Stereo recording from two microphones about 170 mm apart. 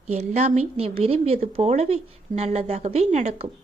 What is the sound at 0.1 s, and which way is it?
Speech, 40° right (ahead or behind).